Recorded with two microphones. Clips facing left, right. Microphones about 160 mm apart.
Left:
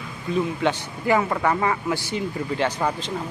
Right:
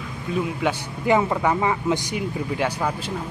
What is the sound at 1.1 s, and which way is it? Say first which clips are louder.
Speech: right 1 dB; 15° right (ahead or behind).